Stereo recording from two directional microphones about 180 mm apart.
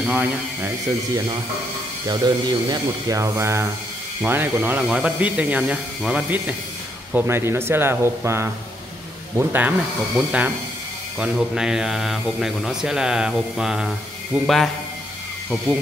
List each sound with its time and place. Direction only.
0.0 s speech: 10° right (ahead or behind)
2.0 s speech: 20° right (ahead or behind); by 14.7 s centre (ahead or behind)